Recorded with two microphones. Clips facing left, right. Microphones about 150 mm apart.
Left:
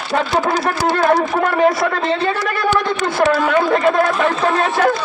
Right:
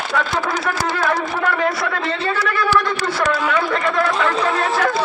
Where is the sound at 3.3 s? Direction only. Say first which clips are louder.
Left 5 dB; 40° left (ahead or behind).